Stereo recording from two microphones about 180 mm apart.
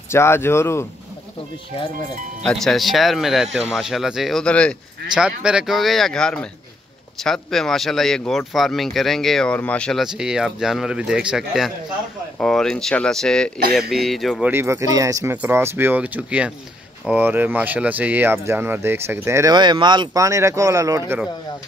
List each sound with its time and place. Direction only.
0.1 s speech: 15° left (ahead or behind)
2.4 s speech: centre (ahead or behind)
5.2 s speech: 5° right (ahead or behind)
14.5 s speech: 15° right (ahead or behind)